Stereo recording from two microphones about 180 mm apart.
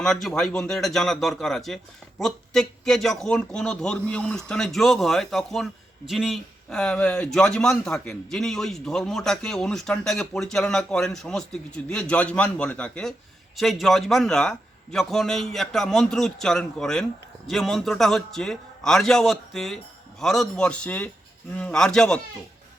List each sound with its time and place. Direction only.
0.0 s a man's voice: centre (ahead or behind)